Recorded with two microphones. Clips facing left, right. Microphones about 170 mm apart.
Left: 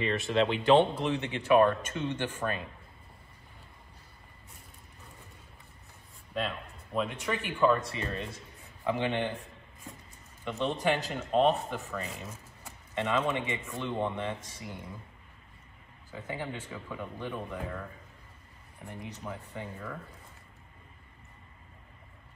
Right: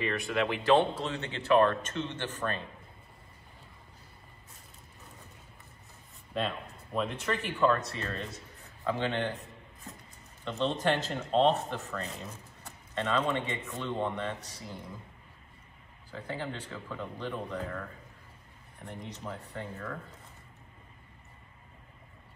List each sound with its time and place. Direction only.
0.0 s speech: 25° left (ahead or behind)
6.3 s speech: centre (ahead or behind)
10.5 s speech: 10° left (ahead or behind)
16.2 s speech: 10° left (ahead or behind)